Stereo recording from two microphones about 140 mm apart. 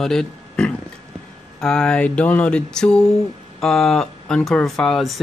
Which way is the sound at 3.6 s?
5° left (ahead or behind).